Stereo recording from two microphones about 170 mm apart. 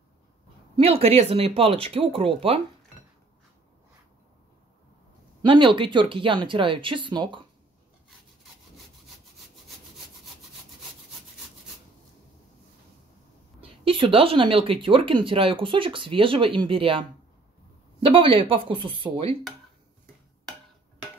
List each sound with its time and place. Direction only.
0.7 s speech: 35° right (ahead or behind)
5.4 s speech: 30° right (ahead or behind)
13.6 s speech: 30° right (ahead or behind)
18.0 s speech: 30° right (ahead or behind)